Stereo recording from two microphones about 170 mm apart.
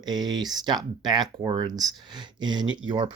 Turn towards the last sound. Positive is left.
turn(degrees=-25)  # may be behind; listen again after turning